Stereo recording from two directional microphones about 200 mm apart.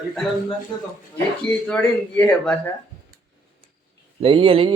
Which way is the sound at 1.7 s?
5° left (ahead or behind).